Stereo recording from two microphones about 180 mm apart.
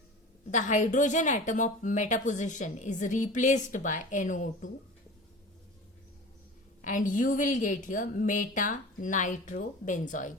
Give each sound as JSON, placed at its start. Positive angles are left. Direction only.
{"t": 0.5, "sound": "a woman's voice", "side_deg": 45}
{"t": 6.8, "sound": "a woman's voice", "side_deg": 45}